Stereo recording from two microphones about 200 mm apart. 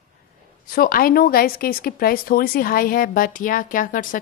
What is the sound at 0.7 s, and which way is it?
A woman's voice, 45° left (ahead or behind).